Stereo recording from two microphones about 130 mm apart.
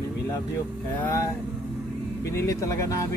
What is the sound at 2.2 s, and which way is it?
Speech, 25° left (ahead or behind).